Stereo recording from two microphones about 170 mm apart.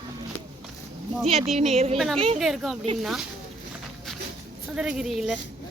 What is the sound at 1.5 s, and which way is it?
Speech, 40° right (ahead or behind).